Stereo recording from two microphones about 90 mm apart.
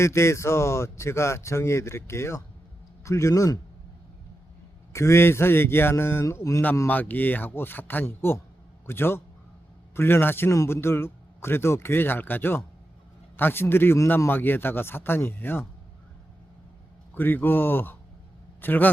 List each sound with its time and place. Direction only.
0.0 s speech: 30° left (ahead or behind)
4.9 s speech: 35° left (ahead or behind)
6.8 s speech: 20° left (ahead or behind)
17.2 s speech: 20° left (ahead or behind)